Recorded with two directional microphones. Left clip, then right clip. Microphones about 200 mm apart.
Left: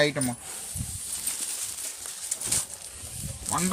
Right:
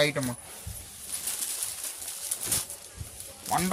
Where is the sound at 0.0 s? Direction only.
50° right (ahead or behind).